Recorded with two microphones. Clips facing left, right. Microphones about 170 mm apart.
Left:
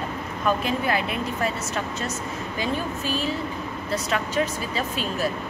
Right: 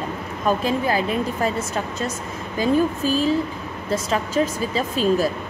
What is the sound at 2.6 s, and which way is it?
Speech, 40° right (ahead or behind).